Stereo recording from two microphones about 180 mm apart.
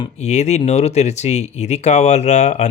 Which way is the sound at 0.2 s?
40° left (ahead or behind).